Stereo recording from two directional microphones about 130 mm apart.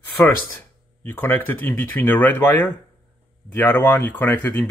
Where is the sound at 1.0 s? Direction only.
15° left (ahead or behind).